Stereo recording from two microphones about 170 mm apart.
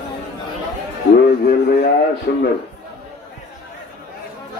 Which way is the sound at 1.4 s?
65° left (ahead or behind).